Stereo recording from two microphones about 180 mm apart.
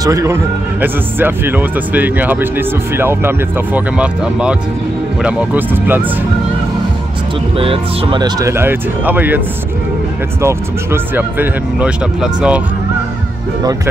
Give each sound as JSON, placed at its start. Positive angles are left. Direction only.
{"t": 0.0, "sound": "speech", "side_deg": -20}
{"t": 7.5, "sound": "speech", "side_deg": -30}
{"t": 10.4, "sound": "speech", "side_deg": -10}